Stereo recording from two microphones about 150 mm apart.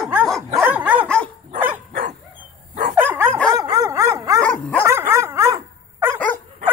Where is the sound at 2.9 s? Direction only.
15° right (ahead or behind).